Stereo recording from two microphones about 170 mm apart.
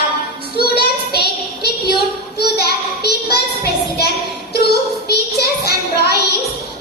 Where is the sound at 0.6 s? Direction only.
70° left (ahead or behind).